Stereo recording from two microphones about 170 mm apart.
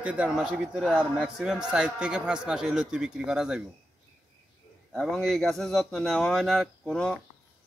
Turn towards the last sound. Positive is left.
turn(degrees=5)  # may be behind; listen again after turning